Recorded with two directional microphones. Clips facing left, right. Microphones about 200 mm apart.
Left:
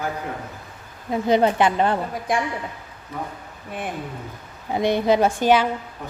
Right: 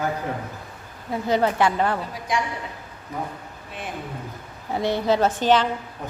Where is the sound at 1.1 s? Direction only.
20° left (ahead or behind).